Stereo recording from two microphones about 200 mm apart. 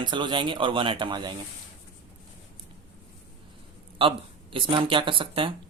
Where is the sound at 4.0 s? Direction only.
25° right (ahead or behind).